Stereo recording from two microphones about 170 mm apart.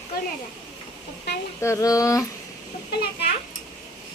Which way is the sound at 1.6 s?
20° left (ahead or behind).